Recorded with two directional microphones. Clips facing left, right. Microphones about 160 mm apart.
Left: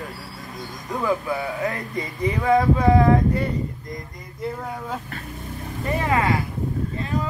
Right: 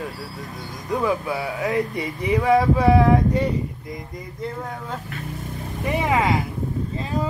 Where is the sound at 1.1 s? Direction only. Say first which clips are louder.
Even; 10° right (ahead or behind).